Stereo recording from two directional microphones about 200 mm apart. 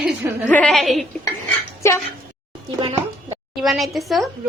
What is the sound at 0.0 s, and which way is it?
Speech, 10° right (ahead or behind).